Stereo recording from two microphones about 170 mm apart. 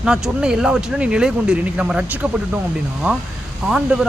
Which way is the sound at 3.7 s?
5° right (ahead or behind).